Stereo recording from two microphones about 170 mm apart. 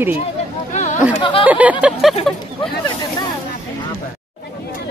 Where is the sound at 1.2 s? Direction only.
30° left (ahead or behind).